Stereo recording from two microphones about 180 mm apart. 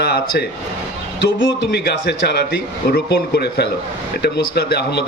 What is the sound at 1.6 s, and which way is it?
A man's voice, 65° left (ahead or behind).